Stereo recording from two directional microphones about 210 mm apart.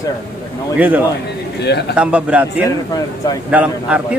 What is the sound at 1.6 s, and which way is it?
Speech, 55° left (ahead or behind).